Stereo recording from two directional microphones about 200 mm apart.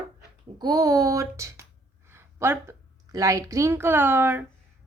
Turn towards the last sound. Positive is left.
turn(degrees=-10)  # may be behind; listen again after turning